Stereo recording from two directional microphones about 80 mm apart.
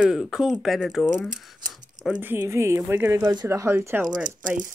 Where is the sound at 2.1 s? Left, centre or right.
Right.